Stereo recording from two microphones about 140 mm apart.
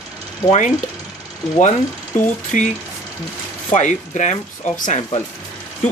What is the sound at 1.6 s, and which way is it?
Speech, 60° left (ahead or behind).